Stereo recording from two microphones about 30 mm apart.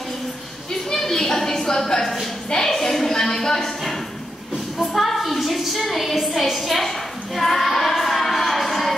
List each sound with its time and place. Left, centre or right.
0.9 s a sound: centre
2.6 s a woman's voice: centre
4.7 s a woman's voice: centre
7.3 s child singing: centre